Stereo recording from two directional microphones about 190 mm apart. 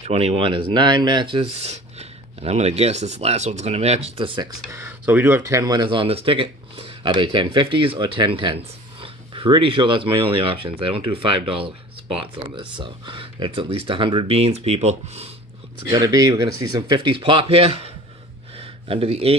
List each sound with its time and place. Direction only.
0.0 s speech: 35° right (ahead or behind)
4.6 s speech: 15° right (ahead or behind); by 15.2 s 35° right (ahead or behind)
15.9 s speech: 20° right (ahead or behind)
18.6 s a sound: 30° right (ahead or behind)